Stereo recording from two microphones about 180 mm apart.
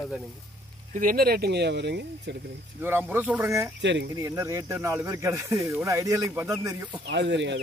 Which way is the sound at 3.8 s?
80° right.